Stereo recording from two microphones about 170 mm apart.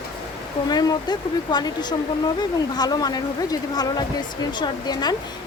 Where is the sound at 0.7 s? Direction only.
25° left (ahead or behind).